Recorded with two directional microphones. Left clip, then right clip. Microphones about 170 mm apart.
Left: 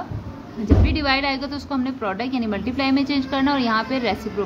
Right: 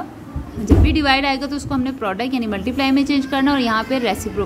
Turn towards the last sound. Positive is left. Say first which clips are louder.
# right 3 dB
turn(degrees=-25)  # may be behind; listen again after turning